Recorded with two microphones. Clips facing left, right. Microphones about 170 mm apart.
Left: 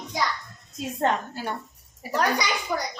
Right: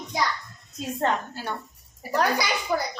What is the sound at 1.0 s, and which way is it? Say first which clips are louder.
Speech: left 1 dB; 15° left (ahead or behind).